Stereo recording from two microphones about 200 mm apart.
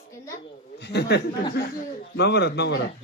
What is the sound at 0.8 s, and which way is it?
A man's voice, 55° left (ahead or behind).